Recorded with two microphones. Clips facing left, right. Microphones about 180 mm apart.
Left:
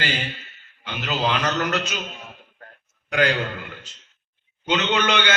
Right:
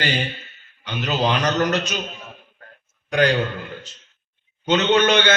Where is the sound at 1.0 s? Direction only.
35° right (ahead or behind).